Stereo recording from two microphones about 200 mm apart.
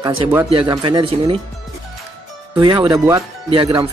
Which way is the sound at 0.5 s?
25° right (ahead or behind).